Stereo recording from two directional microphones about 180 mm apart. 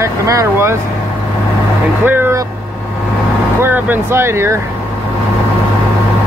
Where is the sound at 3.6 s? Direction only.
10° right (ahead or behind).